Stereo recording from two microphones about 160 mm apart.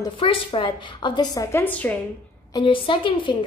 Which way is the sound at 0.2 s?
35° left (ahead or behind).